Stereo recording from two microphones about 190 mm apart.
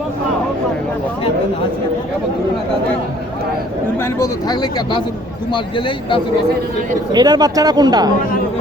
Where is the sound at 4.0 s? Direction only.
15° left (ahead or behind).